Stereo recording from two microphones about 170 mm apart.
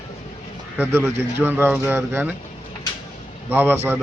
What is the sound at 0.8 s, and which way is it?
A man's voice, 10° right (ahead or behind).